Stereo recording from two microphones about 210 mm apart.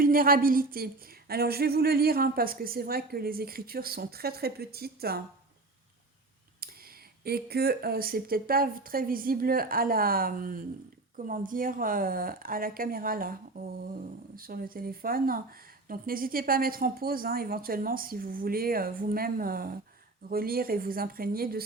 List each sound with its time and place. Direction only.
0.0 s speech: 45° right (ahead or behind)
6.6 s speech: 45° right (ahead or behind)